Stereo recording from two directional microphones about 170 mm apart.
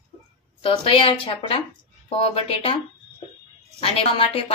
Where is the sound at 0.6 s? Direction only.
30° left (ahead or behind).